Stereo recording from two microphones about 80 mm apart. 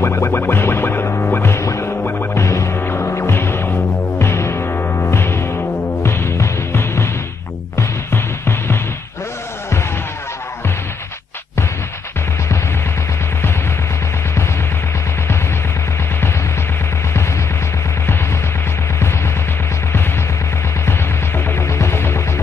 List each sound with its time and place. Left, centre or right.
0.0 s music: left
21.5 s music: left